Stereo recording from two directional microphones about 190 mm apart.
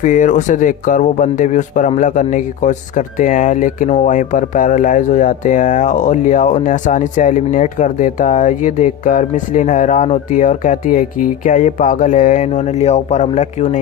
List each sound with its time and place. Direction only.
0.0 s speech: 40° left (ahead or behind)